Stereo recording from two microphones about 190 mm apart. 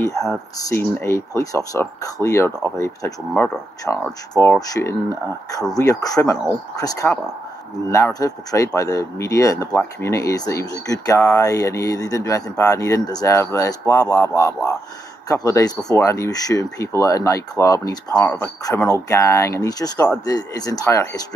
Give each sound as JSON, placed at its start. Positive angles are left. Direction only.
{"t": 0.7, "sound": "speech", "side_deg": 15}